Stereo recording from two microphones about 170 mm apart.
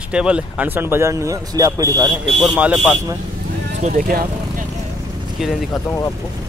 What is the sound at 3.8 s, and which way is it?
Speech, 50° right (ahead or behind).